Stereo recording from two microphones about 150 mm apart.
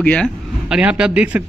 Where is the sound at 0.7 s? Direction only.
5° right (ahead or behind).